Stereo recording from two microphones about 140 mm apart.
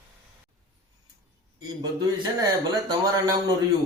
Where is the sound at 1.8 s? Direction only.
25° right (ahead or behind).